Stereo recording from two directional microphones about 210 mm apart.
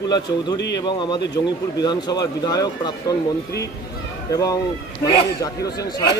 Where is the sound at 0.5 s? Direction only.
55° left (ahead or behind).